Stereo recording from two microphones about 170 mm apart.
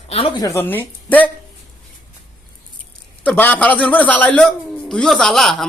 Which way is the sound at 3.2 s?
10° left (ahead or behind).